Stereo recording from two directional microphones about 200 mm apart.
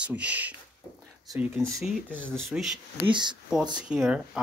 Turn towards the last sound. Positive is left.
turn(degrees=-5)  # may be behind; listen again after turning